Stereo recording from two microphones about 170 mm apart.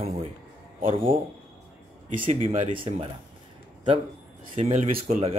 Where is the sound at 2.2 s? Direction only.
35° right (ahead or behind).